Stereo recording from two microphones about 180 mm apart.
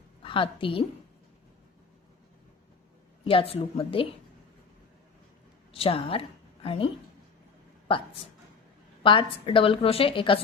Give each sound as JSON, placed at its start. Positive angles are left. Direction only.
{"t": 0.2, "sound": "a woman's voice", "side_deg": 30}
{"t": 3.2, "sound": "a woman's voice", "side_deg": 30}
{"t": 5.7, "sound": "a woman's voice", "side_deg": 30}
{"t": 9.0, "sound": "a woman's voice", "side_deg": 30}